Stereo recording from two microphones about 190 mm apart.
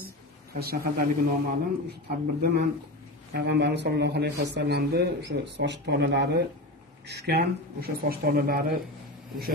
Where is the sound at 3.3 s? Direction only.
65° right (ahead or behind).